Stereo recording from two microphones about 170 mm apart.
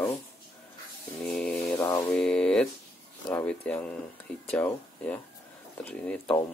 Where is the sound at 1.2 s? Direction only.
5° left (ahead or behind).